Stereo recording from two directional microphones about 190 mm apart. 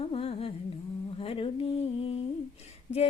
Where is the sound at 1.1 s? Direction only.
30° left (ahead or behind).